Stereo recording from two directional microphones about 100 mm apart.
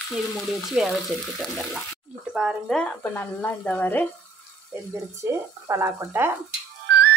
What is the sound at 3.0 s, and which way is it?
Speech, 20° left (ahead or behind).